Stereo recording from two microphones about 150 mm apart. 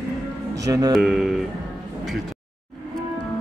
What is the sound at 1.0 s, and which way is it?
Speech, centre (ahead or behind).